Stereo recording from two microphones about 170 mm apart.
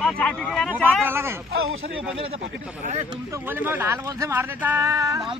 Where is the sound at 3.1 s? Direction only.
20° right (ahead or behind).